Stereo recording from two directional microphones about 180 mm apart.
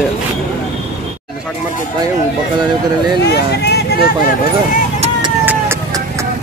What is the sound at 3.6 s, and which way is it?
Vehicle, 65° left (ahead or behind).